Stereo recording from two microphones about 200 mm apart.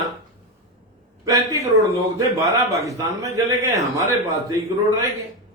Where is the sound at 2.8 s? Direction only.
15° right (ahead or behind).